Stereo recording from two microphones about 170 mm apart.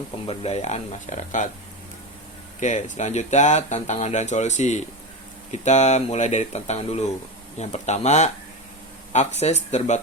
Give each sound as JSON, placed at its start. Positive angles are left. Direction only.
{"t": 0.3, "sound": "speech", "side_deg": 35}
{"t": 2.6, "sound": "speech", "side_deg": 45}